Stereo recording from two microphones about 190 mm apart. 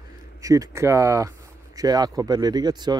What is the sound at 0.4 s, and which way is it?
Speech, 15° right (ahead or behind).